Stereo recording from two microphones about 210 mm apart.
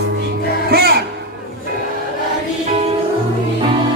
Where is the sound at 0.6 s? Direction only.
50° right (ahead or behind).